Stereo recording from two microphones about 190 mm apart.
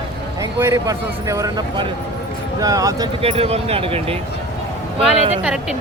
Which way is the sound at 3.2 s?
30° right (ahead or behind).